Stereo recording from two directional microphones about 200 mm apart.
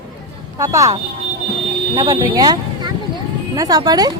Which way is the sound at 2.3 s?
20° right (ahead or behind).